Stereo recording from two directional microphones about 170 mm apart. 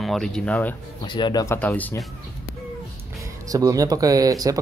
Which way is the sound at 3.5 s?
20° right (ahead or behind).